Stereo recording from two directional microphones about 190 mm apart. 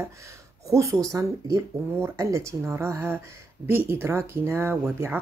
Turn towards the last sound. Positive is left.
turn(degrees=-10)  # may be behind; listen again after turning